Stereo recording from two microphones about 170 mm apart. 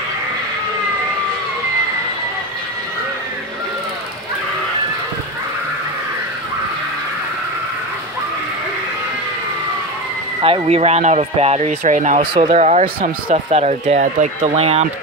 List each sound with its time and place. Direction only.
10.4 s speech: 35° right (ahead or behind)
11.8 s speech: 50° right (ahead or behind)